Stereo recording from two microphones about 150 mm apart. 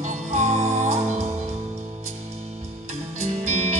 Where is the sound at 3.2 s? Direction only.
50° right (ahead or behind).